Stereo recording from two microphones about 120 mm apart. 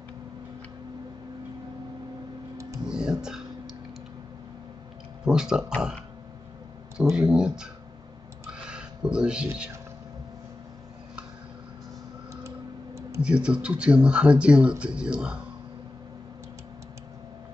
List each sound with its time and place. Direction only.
2.9 s music: 5° right (ahead or behind)
5.2 s speech: 5° right (ahead or behind)
7.0 s speech: 10° right (ahead or behind)
8.5 s a sound: 5° right (ahead or behind)
12.4 s tick: 25° right (ahead or behind)
13.2 s speech: 10° right (ahead or behind)